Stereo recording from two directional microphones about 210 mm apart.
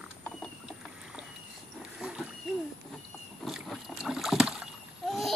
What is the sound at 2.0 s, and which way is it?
Wild animals, 5° right (ahead or behind).